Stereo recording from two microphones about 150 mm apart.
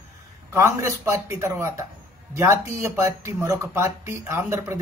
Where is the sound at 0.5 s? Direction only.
20° right (ahead or behind).